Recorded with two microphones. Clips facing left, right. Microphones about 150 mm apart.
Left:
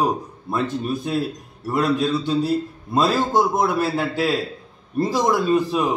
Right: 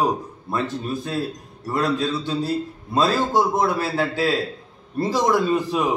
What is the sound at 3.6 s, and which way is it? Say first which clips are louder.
A man's voice: left 1 dB; 15° left (ahead or behind).